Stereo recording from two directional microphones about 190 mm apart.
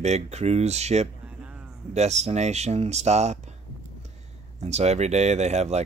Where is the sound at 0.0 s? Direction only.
35° right (ahead or behind).